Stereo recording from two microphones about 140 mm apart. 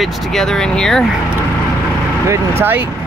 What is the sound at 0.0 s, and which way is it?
Speech, 5° left (ahead or behind).